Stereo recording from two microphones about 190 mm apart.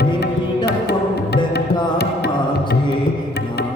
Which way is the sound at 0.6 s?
60° left (ahead or behind).